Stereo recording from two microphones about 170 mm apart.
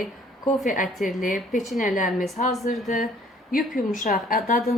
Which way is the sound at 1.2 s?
50° left (ahead or behind).